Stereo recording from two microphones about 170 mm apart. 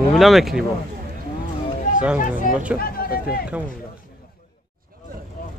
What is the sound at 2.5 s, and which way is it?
Speech, 55° left (ahead or behind).